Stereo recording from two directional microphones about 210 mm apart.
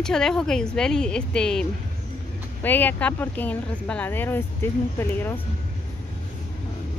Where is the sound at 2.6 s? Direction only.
10° left (ahead or behind).